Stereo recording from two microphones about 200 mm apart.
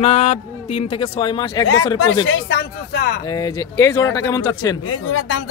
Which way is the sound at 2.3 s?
65° left (ahead or behind).